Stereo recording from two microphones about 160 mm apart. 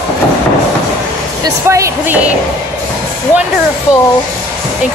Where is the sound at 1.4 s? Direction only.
20° right (ahead or behind).